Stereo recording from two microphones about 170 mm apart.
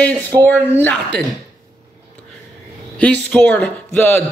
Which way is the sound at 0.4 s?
10° left (ahead or behind).